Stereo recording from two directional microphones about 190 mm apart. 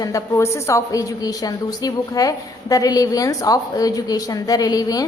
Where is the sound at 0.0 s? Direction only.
15° left (ahead or behind).